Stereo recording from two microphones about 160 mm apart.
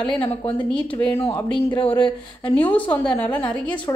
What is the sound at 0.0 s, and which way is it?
Speech, 35° left (ahead or behind).